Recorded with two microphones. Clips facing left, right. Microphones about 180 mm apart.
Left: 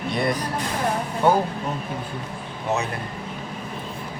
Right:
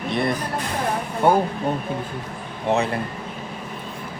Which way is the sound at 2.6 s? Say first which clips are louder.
Right 4 dB; 30° right (ahead or behind).